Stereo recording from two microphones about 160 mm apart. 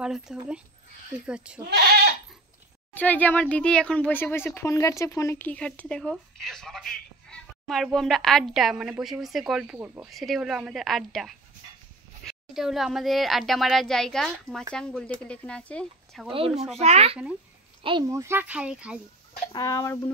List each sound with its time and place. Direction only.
0.0 s speech: 5° right (ahead or behind)
2.9 s speech: 10° left (ahead or behind)
9.8 s speech: 15° right (ahead or behind)
10.0 s speech: centre (ahead or behind)
16.3 s speech: 35° right (ahead or behind)
18.1 s speech: 15° right (ahead or behind)
19.5 s speech: 20° left (ahead or behind)